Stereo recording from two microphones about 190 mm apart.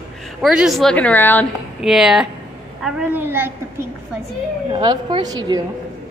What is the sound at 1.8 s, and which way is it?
A woman's voice, centre (ahead or behind).